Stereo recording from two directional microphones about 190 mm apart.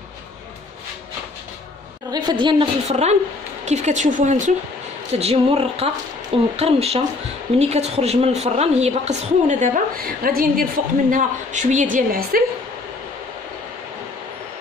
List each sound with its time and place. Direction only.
2.0 s a woman's voice: 20° right (ahead or behind); by 12.4 s 50° right (ahead or behind)